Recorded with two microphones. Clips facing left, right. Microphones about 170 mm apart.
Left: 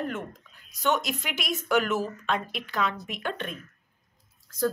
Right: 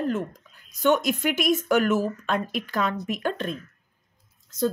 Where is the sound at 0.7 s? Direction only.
50° right (ahead or behind).